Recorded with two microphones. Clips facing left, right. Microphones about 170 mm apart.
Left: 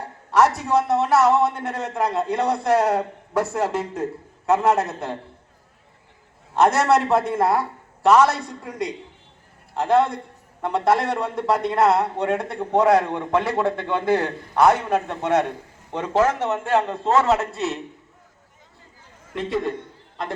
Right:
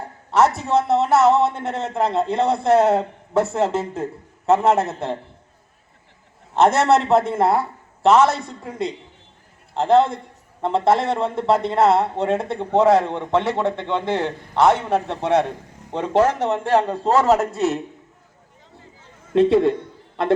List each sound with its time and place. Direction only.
0.3 s a man's voice: 25° right (ahead or behind)
6.6 s a man's voice: 25° right (ahead or behind)
9.7 s a man's voice: 25° right (ahead or behind); by 17.7 s 45° right (ahead or behind)
19.3 s a man's voice: 65° right (ahead or behind)